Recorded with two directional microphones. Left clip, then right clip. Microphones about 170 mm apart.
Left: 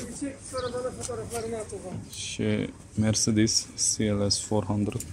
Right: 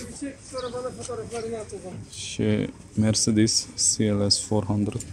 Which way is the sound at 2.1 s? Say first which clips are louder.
Right 3 dB; 5° left (ahead or behind).